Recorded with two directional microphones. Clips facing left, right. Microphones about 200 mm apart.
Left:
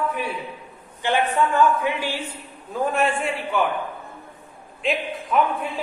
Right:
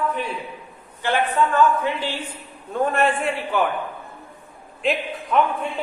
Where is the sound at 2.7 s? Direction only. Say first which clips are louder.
Right 2 dB; centre (ahead or behind).